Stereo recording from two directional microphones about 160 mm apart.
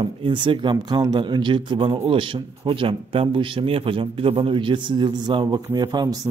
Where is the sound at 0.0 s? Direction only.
30° right (ahead or behind).